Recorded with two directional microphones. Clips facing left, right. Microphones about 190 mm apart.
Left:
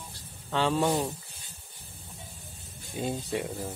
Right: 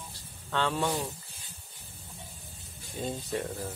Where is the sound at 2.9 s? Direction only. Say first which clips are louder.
Left 2 dB; 10° left (ahead or behind).